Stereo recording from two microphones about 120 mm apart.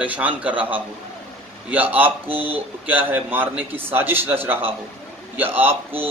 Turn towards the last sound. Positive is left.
turn(degrees=-15)  # may be behind; listen again after turning